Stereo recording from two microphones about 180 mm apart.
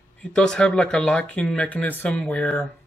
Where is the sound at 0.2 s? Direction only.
5° left (ahead or behind).